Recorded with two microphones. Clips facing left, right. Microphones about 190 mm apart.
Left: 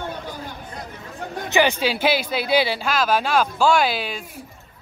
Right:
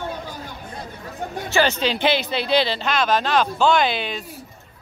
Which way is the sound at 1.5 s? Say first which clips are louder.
Left 1 dB; 15° left (ahead or behind).